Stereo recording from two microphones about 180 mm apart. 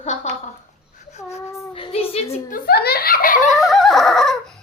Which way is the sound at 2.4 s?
55° left (ahead or behind).